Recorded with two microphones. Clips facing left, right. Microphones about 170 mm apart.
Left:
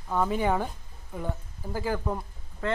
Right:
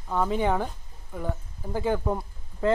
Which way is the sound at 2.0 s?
5° right (ahead or behind).